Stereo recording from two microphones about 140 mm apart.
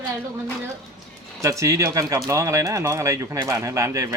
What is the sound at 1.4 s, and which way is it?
Speech, 20° right (ahead or behind).